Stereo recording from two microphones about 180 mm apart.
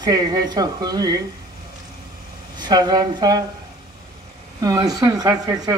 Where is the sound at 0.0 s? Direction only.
25° right (ahead or behind).